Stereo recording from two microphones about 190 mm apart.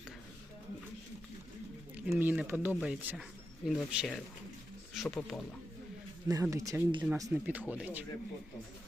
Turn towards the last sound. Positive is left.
turn(degrees=-5)  # may be behind; listen again after turning